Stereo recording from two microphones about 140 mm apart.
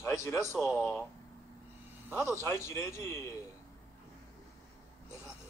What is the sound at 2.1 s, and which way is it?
Speech, 15° left (ahead or behind).